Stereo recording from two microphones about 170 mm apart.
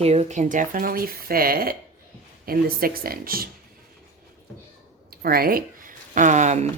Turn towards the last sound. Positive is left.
turn(degrees=-45)  # may be behind; listen again after turning